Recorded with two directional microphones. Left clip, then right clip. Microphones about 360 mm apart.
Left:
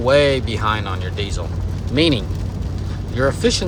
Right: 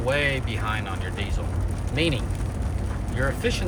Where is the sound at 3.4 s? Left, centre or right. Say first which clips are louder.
Left 8 dB; centre.